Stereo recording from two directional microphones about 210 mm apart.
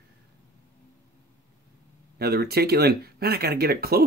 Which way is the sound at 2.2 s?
50° right (ahead or behind).